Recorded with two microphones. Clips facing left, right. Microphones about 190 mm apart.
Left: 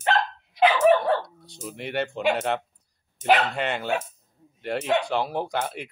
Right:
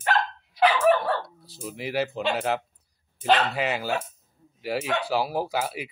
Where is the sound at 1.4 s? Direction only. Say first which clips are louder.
Right 1 dB; centre (ahead or behind).